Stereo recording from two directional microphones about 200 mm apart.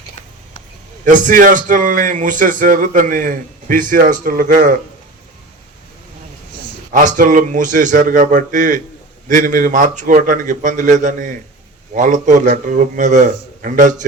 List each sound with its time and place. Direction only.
1.0 s a man's voice: 40° right (ahead or behind)
6.9 s a man's voice: 40° right (ahead or behind)